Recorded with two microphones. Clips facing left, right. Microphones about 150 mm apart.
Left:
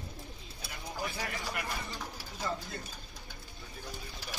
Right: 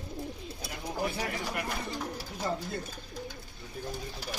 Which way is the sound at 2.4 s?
25° right (ahead or behind).